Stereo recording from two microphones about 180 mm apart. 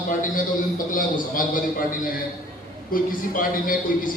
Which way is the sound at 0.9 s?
50° left (ahead or behind).